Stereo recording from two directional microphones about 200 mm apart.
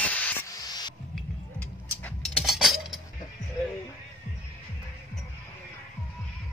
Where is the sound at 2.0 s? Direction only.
Centre (ahead or behind).